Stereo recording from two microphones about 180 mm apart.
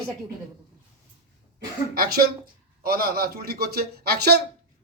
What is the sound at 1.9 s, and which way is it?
Speech, 60° right (ahead or behind).